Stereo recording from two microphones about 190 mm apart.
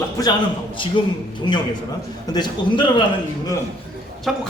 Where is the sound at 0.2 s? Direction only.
20° left (ahead or behind).